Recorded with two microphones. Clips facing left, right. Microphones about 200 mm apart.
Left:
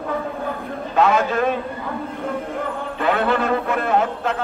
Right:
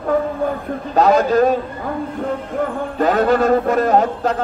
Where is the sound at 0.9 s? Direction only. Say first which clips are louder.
Right 5 dB; 40° right (ahead or behind).